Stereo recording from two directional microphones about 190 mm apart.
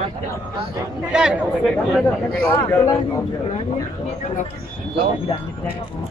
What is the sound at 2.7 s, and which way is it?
Speech, 15° left (ahead or behind).